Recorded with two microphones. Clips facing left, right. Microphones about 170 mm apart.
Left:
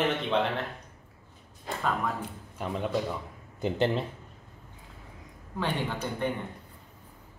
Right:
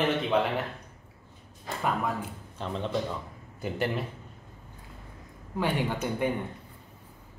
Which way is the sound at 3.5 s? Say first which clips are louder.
Left 3 dB; 25° left (ahead or behind).